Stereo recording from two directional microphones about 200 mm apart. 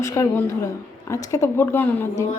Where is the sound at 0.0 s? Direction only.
15° left (ahead or behind).